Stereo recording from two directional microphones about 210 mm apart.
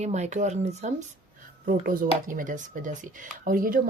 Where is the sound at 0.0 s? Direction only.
35° right (ahead or behind).